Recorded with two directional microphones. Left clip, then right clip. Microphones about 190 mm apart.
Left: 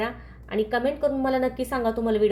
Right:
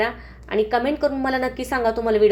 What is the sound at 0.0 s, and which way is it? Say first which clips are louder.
A woman's voice: right 6 dB; 25° right (ahead or behind).